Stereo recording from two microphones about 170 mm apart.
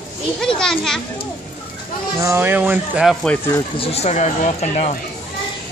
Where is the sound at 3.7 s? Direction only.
35° left (ahead or behind).